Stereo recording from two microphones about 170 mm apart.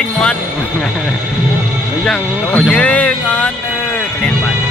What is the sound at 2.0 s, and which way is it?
Speech, 5° left (ahead or behind).